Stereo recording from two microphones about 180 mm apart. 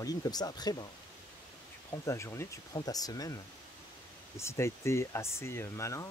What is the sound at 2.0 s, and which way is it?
Speech, 15° left (ahead or behind).